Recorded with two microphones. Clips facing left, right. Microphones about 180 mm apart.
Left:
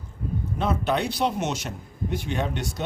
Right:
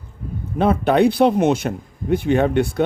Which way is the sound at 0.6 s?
55° right (ahead or behind).